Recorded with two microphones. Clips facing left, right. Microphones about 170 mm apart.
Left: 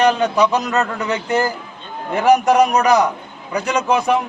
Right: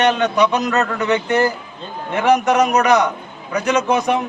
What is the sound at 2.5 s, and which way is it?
Speech, 35° left (ahead or behind).